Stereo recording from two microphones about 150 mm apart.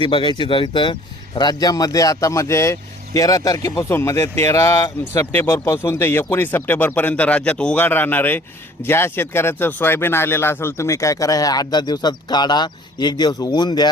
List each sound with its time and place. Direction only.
0.0 s speech: 35° left (ahead or behind)